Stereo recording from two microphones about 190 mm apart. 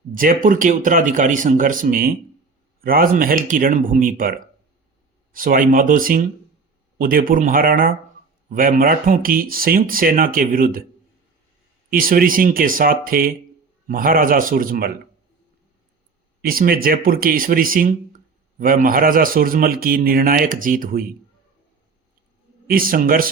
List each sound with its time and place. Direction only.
0.1 s a man's voice: 45° right (ahead or behind)
11.9 s a man's voice: 50° right (ahead or behind)
16.4 s a man's voice: 50° right (ahead or behind)
22.6 s a man's voice: 50° right (ahead or behind)